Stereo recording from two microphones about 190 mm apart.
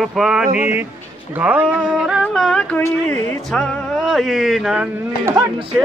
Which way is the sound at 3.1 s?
5° left (ahead or behind).